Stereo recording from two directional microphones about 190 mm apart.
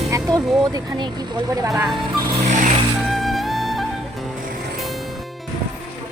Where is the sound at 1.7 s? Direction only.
Centre (ahead or behind).